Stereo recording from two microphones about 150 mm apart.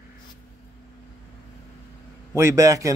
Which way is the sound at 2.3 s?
20° right (ahead or behind).